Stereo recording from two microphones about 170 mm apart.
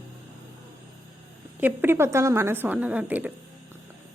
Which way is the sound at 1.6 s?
15° right (ahead or behind).